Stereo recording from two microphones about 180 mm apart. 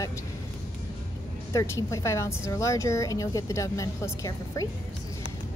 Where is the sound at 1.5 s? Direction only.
15° left (ahead or behind).